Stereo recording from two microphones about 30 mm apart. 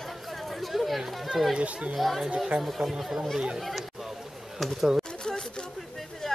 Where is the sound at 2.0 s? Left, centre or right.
Centre.